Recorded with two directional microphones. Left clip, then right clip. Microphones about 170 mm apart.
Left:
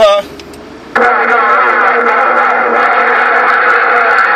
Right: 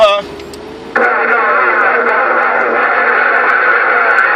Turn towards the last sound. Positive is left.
turn(degrees=45)  # may be behind; listen again after turning